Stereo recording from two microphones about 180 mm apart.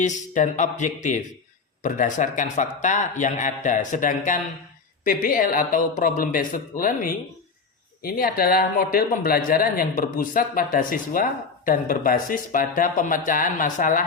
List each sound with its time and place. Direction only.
0.0 s speech: 45° left (ahead or behind)